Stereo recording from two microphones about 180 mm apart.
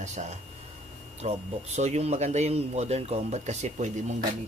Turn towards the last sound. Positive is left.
turn(degrees=-40)  # may be behind; listen again after turning